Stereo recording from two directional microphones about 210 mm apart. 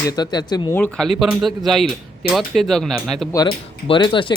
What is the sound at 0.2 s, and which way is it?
Speech, 20° left (ahead or behind).